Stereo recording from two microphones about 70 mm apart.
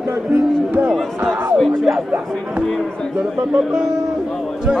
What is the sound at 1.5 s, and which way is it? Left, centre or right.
Music, centre.